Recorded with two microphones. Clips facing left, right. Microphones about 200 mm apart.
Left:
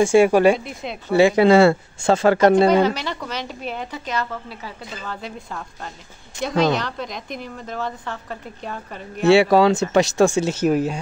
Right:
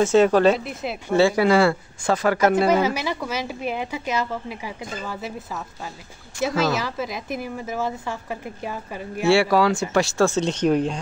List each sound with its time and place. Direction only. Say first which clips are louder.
0.0 s speech: left 2 dB; 10° left (ahead or behind)
0.7 s speech: right 1 dB; 5° right (ahead or behind)
1.1 s speech: left 4 dB; 20° left (ahead or behind)
2.7 s a woman's voice: left 2 dB; 10° right (ahead or behind)
9.3 s speech: left 4 dB; 20° left (ahead or behind)